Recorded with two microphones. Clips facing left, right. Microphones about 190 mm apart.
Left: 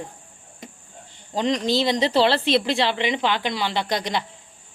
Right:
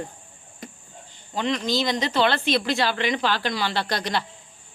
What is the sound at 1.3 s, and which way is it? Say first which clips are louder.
A woman's voice: left 3 dB; 35° left (ahead or behind).